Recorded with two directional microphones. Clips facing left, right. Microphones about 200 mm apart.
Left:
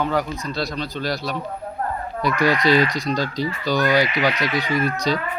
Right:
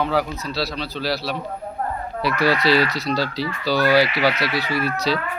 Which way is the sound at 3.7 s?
5° right (ahead or behind).